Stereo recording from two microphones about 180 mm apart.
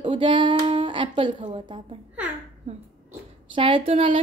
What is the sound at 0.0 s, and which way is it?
A woman's voice, 25° right (ahead or behind).